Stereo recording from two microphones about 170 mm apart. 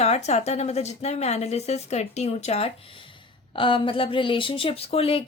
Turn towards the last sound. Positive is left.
turn(degrees=35)  # may be behind; listen again after turning